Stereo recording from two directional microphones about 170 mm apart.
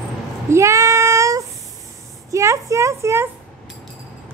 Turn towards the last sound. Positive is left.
turn(degrees=-15)  # may be behind; listen again after turning